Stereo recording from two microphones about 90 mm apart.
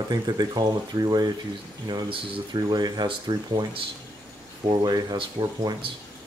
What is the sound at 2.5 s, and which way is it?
Speech, 50° right (ahead or behind).